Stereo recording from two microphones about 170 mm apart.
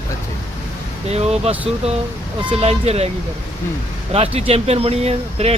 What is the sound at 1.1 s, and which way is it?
Speech, 40° right (ahead or behind).